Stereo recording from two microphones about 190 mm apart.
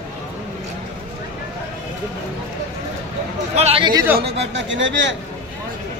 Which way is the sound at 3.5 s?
30° right (ahead or behind).